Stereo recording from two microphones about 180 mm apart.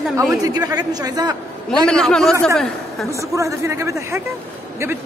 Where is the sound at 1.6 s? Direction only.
5° left (ahead or behind).